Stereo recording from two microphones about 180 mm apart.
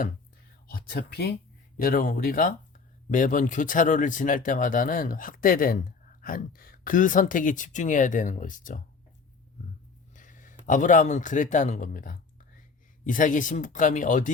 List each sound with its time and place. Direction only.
0.7 s speech: 55° left (ahead or behind)
10.2 s a man's voice: 45° left (ahead or behind)